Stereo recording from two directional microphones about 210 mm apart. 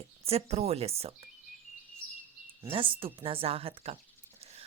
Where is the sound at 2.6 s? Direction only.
25° right (ahead or behind).